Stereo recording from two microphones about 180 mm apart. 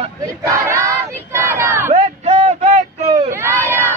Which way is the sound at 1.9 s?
35° right (ahead or behind).